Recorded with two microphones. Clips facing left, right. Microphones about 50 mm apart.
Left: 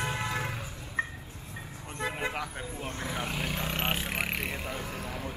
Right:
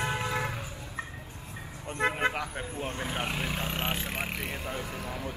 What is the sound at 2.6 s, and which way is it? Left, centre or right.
Speech, right.